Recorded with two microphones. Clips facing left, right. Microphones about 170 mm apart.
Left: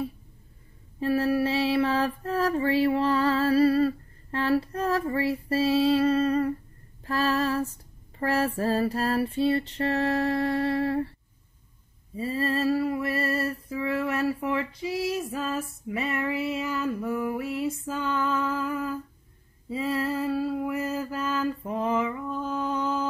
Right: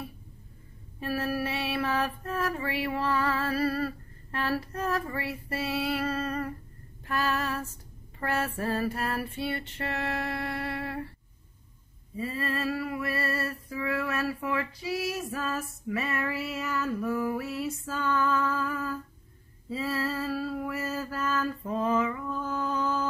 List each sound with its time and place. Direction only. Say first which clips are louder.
0.9 s mantra: left 7 dB; 30° left (ahead or behind)
7.1 s music: left 5 dB; 30° left (ahead or behind)
12.2 s a sound: left 5 dB; 30° left (ahead or behind)